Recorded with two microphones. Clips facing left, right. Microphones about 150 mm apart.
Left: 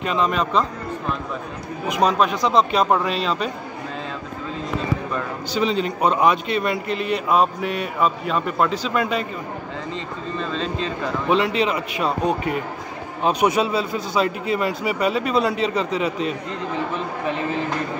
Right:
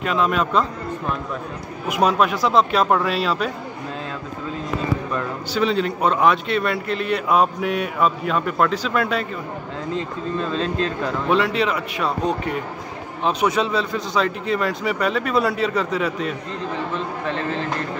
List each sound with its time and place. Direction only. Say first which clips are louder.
0.0 s a man's voice: right 1 dB; centre (ahead or behind)
1.9 s a man's voice: even; 5° right (ahead or behind)
5.1 s a man's voice: right 1 dB; centre (ahead or behind)
10.3 s a man's voice: right 3 dB; 5° right (ahead or behind)
13.2 s a man's voice: left 1 dB; 15° left (ahead or behind)
17.3 s speech: left 1 dB; 10° left (ahead or behind)